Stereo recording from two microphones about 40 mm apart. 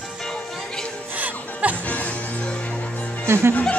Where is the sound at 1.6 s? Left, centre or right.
Right.